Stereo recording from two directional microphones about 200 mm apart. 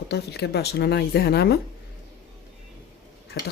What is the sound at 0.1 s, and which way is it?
A woman's voice, 55° left (ahead or behind).